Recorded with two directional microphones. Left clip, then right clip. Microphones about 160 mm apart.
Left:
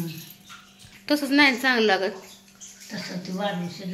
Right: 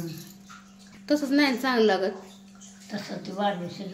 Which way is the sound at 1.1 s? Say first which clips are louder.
Left 4 dB; centre (ahead or behind).